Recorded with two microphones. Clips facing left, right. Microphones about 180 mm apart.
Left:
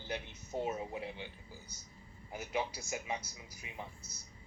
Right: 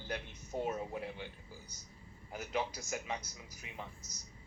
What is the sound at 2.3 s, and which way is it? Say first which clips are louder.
Speech: even; 10° left (ahead or behind).